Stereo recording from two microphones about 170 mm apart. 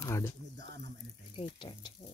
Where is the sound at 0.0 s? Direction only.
15° left (ahead or behind).